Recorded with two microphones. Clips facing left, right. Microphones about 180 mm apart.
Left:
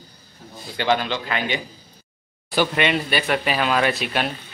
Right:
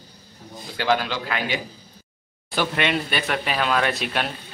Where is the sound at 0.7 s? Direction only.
5° right (ahead or behind).